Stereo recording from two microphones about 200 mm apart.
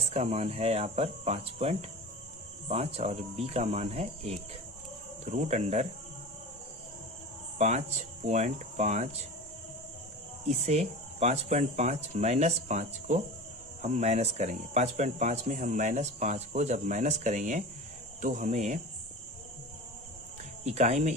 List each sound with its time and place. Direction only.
0.1 s speech: 30° right (ahead or behind)
7.6 s speech: 30° right (ahead or behind)
10.5 s speech: 35° right (ahead or behind)
20.7 s speech: 35° right (ahead or behind)